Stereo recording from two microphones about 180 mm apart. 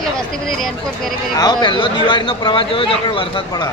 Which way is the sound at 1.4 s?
25° left (ahead or behind).